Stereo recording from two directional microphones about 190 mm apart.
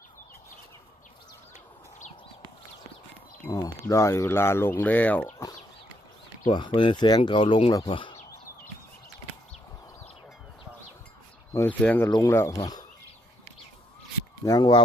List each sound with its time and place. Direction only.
3.8 s speech: 15° left (ahead or behind)
6.5 s speech: 25° left (ahead or behind)
8.1 s a sound: 15° left (ahead or behind)
11.5 s speech: 10° left (ahead or behind)
14.4 s speech: 20° left (ahead or behind)